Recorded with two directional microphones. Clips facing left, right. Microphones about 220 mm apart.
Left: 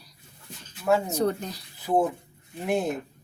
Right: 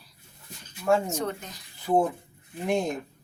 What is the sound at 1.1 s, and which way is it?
Speech, 35° left (ahead or behind).